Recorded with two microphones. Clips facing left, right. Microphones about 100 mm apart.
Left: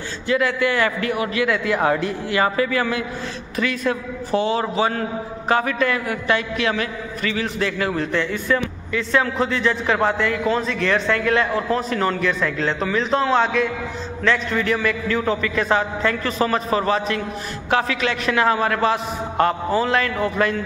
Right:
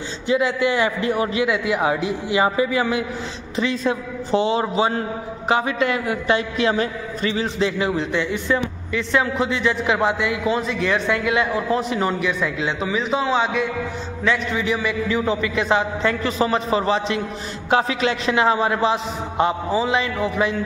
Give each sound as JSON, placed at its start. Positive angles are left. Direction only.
{"t": 0.3, "sound": "a man's voice", "side_deg": -20}
{"t": 1.1, "sound": "a man's voice", "side_deg": -30}
{"t": 1.4, "sound": "a man's voice", "side_deg": -15}